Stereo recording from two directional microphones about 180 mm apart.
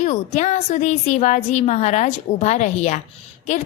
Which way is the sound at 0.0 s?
40° left (ahead or behind).